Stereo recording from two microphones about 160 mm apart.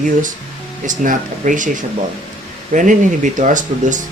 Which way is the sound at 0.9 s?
55° right (ahead or behind).